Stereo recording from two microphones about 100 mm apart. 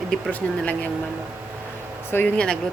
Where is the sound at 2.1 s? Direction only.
20° left (ahead or behind).